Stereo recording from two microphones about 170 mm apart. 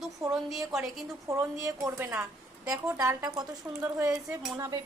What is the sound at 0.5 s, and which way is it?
Speech, centre (ahead or behind).